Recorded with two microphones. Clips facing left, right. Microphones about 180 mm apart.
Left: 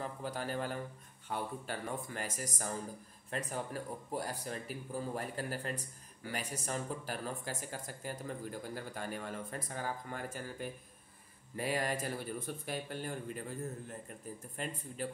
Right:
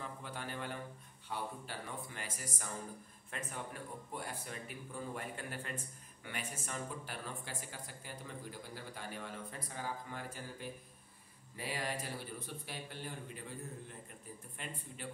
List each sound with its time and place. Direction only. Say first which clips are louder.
0.0 s speech: left 6 dB; 40° left (ahead or behind)